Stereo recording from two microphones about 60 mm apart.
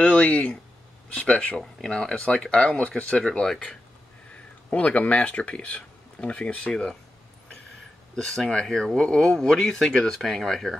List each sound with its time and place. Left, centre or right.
0.0 s speech: centre
4.6 s speech: left
8.2 s speech: centre